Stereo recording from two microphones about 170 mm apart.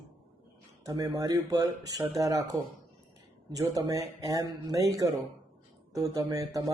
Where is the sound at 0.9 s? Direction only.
20° right (ahead or behind).